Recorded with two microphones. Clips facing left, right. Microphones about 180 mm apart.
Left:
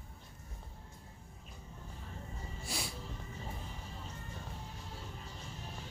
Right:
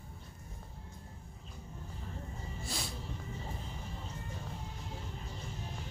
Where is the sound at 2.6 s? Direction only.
10° left (ahead or behind).